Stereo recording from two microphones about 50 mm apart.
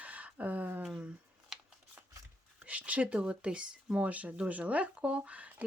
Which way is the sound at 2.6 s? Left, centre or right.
Right.